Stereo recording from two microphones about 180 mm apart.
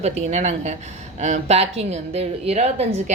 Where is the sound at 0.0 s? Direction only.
40° right (ahead or behind).